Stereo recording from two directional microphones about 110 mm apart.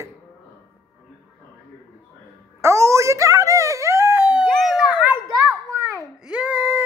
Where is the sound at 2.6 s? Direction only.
25° right (ahead or behind).